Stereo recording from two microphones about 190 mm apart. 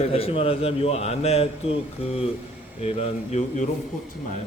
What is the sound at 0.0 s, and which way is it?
A man's voice, 30° left (ahead or behind).